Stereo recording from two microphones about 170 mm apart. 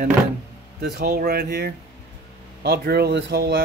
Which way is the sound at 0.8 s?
70° right (ahead or behind).